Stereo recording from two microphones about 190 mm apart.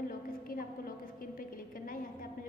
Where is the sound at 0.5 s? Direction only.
50° left (ahead or behind).